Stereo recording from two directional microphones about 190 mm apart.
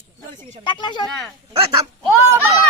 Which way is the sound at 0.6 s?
25° left (ahead or behind).